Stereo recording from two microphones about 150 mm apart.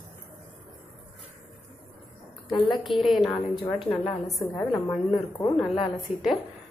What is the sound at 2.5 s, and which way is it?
Speech, 30° left (ahead or behind).